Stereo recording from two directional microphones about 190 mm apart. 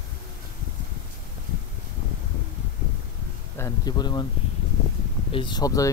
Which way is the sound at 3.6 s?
20° left (ahead or behind).